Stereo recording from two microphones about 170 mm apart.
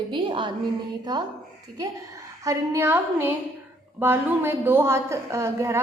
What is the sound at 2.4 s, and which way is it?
A woman's voice, 15° right (ahead or behind).